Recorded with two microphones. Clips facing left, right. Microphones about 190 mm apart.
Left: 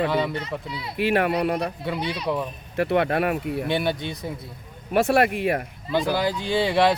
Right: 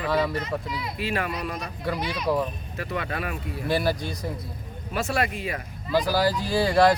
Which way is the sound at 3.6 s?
Centre (ahead or behind).